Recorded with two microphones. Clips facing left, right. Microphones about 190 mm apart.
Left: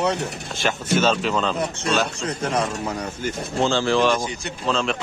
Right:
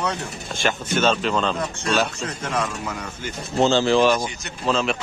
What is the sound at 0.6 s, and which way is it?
Speech, 10° left (ahead or behind).